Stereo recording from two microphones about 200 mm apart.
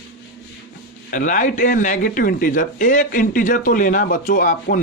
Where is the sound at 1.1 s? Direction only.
40° left (ahead or behind).